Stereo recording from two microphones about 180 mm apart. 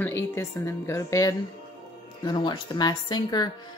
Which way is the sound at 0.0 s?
15° left (ahead or behind).